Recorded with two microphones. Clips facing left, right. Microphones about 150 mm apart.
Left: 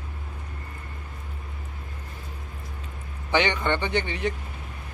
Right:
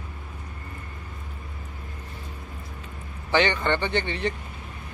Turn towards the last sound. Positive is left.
turn(degrees=10)  # may be behind; listen again after turning